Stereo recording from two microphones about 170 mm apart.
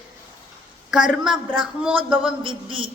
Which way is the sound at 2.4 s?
30° right (ahead or behind).